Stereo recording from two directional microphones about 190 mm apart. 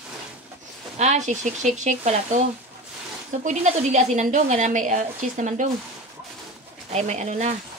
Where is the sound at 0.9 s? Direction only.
35° right (ahead or behind).